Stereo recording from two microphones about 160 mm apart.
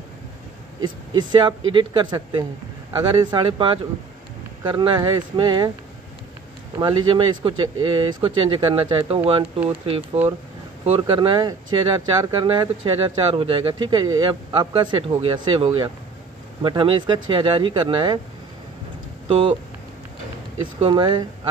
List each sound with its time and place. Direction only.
0.8 s speech: 30° right (ahead or behind)
6.8 s speech: 30° right (ahead or behind)
19.2 s speech: 35° right (ahead or behind)
20.5 s speech: 30° right (ahead or behind)